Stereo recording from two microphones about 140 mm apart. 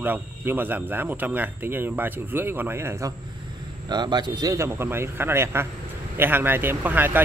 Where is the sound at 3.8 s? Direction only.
30° right (ahead or behind).